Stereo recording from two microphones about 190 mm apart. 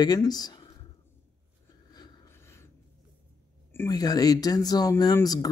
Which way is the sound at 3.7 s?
15° left (ahead or behind).